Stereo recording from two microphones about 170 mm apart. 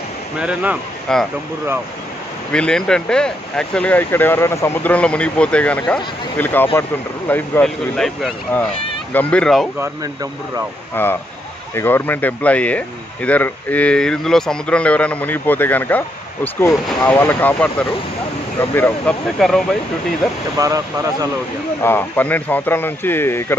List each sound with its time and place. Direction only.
0.4 s speech: 5° right (ahead or behind)
1.1 s speech: 5° left (ahead or behind)
2.5 s speech: 5° left (ahead or behind)
11.0 s speech: 10° left (ahead or behind)
17.1 s speech: 15° left (ahead or behind)
20.5 s speech: 20° right (ahead or behind)
21.8 s speech: 10° left (ahead or behind)